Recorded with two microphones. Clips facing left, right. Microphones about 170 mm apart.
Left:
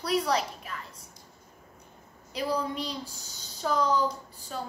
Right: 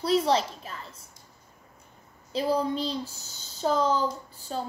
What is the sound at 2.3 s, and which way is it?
A child's voice, 30° right (ahead or behind).